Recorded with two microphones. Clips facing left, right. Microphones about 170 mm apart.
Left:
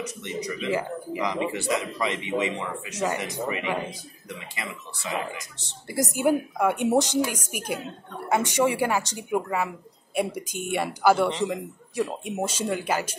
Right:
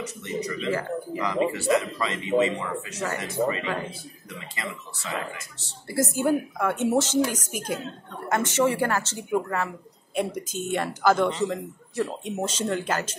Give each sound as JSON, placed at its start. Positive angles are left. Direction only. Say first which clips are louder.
{"t": 0.0, "sound": "a man's voice", "louder": "right 1 dB", "side_deg": 15}